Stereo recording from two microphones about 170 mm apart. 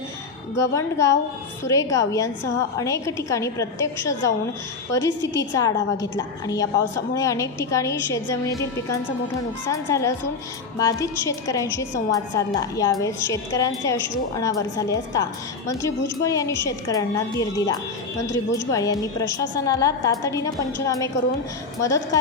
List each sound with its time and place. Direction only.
0.6 s a woman's voice: 15° left (ahead or behind)